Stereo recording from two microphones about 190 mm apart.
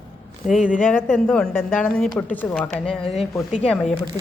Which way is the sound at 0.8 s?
10° left (ahead or behind).